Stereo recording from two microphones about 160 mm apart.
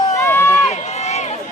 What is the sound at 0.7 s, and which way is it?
Run, 45° left (ahead or behind).